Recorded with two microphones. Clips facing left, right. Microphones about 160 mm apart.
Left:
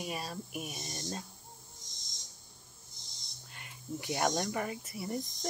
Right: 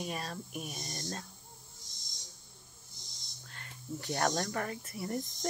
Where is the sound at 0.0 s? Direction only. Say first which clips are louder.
Even; 10° left (ahead or behind).